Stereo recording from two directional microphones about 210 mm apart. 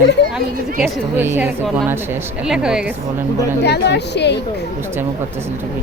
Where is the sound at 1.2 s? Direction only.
10° right (ahead or behind).